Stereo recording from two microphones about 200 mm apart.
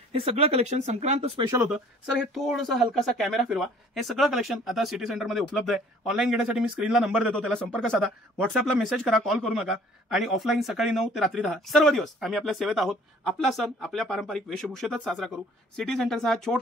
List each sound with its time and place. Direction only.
0.1 s speech: 30° right (ahead or behind)
1.5 s speech: 5° right (ahead or behind)
9.2 s speech: centre (ahead or behind)